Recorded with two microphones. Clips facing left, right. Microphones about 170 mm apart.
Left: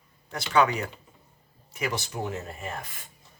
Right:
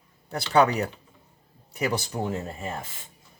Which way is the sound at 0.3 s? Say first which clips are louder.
Right 3 dB; 40° right (ahead or behind).